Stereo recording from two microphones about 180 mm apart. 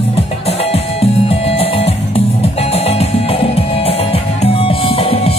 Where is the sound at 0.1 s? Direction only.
35° left (ahead or behind).